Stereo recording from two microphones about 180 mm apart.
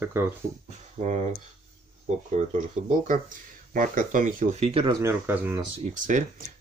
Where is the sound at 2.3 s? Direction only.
40° right (ahead or behind).